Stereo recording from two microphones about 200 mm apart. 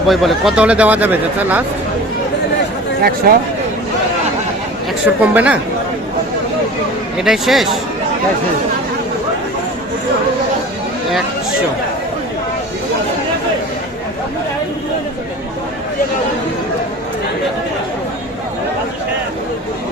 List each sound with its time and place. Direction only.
0.1 s speech: centre (ahead or behind)
3.3 s speech: 50° right (ahead or behind)
5.0 s speech: 5° right (ahead or behind)
7.2 s speech: centre (ahead or behind)